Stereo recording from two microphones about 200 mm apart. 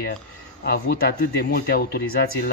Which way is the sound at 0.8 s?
50° left (ahead or behind).